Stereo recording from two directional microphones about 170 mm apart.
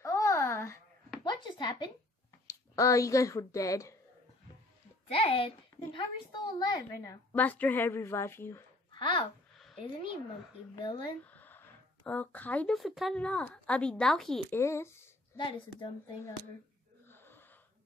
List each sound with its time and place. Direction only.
0.0 s babbling: 15° left (ahead or behind)
1.2 s a sound: 25° left (ahead or behind)
2.7 s a woman's voice: 20° left (ahead or behind)
5.1 s a woman's voice: 35° left (ahead or behind); by 8.6 s 15° left (ahead or behind)
8.9 s speech: 30° left (ahead or behind)
10.8 s a woman's voice: 25° left (ahead or behind)
11.2 s speech: 10° left (ahead or behind)
14.6 s a woman's voice: 15° left (ahead or behind)
15.3 s a woman's voice: 30° left (ahead or behind)
17.1 s wheeze: 10° left (ahead or behind)